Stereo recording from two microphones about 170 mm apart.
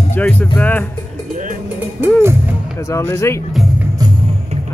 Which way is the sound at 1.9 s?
10° right (ahead or behind).